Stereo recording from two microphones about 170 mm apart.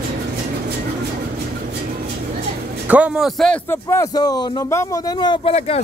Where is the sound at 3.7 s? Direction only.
20° left (ahead or behind).